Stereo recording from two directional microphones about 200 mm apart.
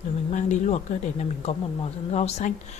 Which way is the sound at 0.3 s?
35° left (ahead or behind).